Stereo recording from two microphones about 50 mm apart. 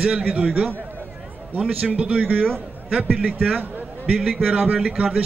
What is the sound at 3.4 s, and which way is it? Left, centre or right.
Speech, right.